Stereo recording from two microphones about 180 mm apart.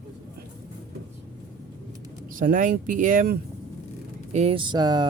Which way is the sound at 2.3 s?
50° right (ahead or behind).